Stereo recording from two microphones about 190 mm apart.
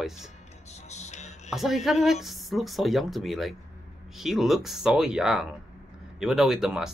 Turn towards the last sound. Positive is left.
turn(degrees=-5)  # may be behind; listen again after turning